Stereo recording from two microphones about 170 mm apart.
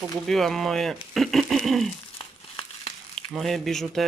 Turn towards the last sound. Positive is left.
turn(degrees=0)  # may be behind; listen again after turning